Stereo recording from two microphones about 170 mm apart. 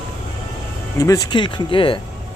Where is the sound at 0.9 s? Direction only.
20° left (ahead or behind).